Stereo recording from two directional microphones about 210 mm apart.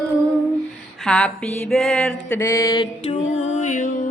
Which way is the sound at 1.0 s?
5° left (ahead or behind).